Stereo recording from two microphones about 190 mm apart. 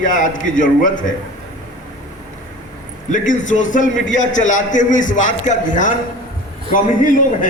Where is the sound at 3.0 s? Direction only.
40° left (ahead or behind).